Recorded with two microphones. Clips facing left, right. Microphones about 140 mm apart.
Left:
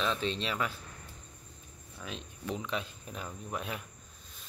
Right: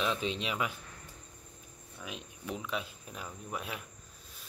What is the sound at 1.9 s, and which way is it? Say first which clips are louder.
Speech: left 1 dB; 5° right (ahead or behind).